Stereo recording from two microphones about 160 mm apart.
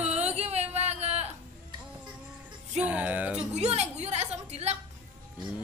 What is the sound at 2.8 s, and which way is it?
Speech, 10° right (ahead or behind).